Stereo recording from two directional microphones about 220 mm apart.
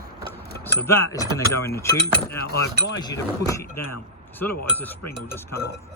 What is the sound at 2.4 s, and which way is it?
Speech, 45° left (ahead or behind).